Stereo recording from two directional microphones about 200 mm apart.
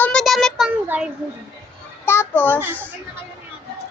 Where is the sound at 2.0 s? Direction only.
10° left (ahead or behind).